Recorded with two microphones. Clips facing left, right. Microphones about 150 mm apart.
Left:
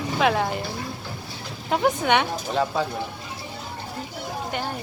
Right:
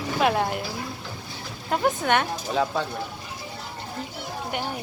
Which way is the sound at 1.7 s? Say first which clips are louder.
Left 2 dB; centre (ahead or behind).